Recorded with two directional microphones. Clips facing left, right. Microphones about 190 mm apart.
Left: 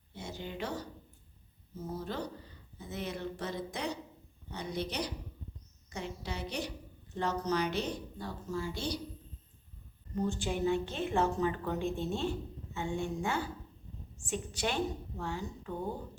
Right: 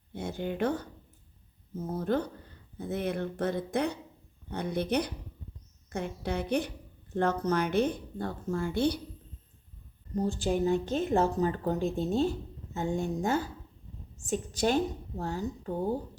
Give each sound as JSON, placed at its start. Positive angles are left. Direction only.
{"t": 0.1, "sound": "a woman's voice", "side_deg": -55}
{"t": 10.2, "sound": "speech", "side_deg": -35}